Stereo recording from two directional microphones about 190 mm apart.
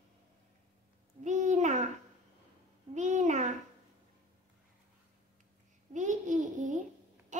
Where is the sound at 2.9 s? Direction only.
40° right (ahead or behind).